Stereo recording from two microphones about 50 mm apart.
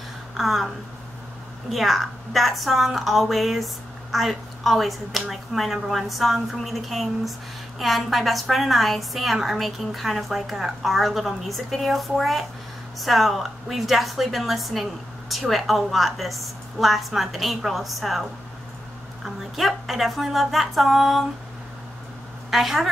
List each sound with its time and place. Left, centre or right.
0.4 s a woman's voice: centre
1.7 s a woman's voice: centre
19.2 s a woman's voice: centre
22.5 s a woman's voice: centre